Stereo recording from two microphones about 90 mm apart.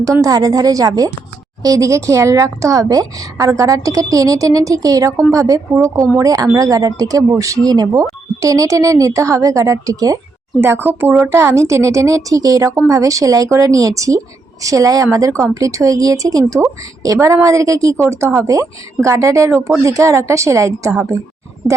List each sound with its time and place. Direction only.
0.0 s a woman's voice: 40° right (ahead or behind)
10.6 s a woman's voice: 25° right (ahead or behind)